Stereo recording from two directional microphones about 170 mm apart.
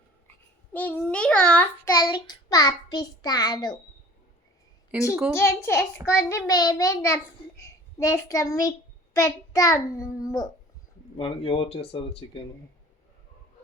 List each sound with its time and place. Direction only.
0.7 s a child's voice: 10° left (ahead or behind)
2.0 s a child's voice: 25° left (ahead or behind)
4.9 s a woman's voice: 10° right (ahead or behind)
5.3 s a child's voice: 15° left (ahead or behind)
11.2 s speech: 35° left (ahead or behind)